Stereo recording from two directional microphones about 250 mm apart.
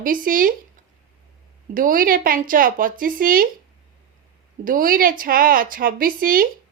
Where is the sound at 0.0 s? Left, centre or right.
Right.